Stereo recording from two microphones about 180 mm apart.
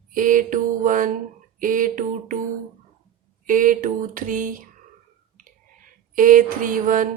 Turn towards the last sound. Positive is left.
turn(degrees=-45)  # may be behind; listen again after turning